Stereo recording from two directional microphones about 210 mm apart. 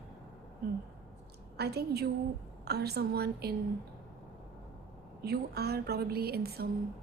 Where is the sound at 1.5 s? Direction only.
50° right (ahead or behind).